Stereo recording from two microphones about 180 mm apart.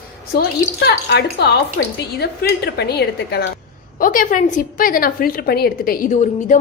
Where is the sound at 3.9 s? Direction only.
50° left (ahead or behind).